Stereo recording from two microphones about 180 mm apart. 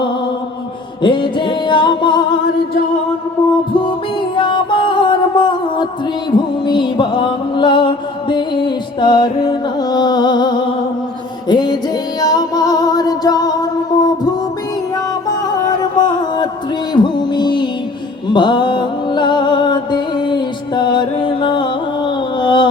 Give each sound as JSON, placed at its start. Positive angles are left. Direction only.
{"t": 1.0, "sound": "music", "side_deg": 25}
{"t": 3.8, "sound": "music", "side_deg": 25}
{"t": 16.0, "sound": "a sound", "side_deg": 45}
{"t": 16.9, "sound": "music", "side_deg": 25}